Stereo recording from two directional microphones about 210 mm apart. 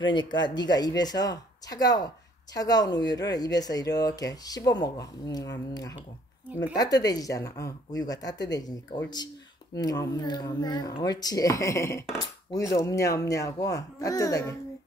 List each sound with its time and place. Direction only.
0.0 s a woman's voice: 20° left (ahead or behind)
6.6 s a woman's voice: 20° left (ahead or behind)